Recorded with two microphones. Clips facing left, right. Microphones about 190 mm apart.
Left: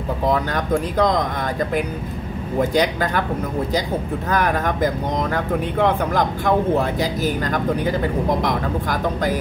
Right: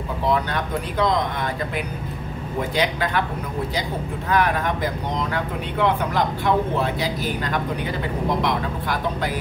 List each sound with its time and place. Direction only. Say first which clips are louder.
0.3 s speech: left 3 dB; 45° left (ahead or behind)
2.7 s speech: even; 45° left (ahead or behind)
4.3 s speech: even; 45° left (ahead or behind)